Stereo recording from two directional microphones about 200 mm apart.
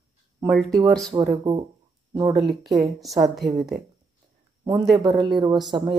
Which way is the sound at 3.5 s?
50° right (ahead or behind).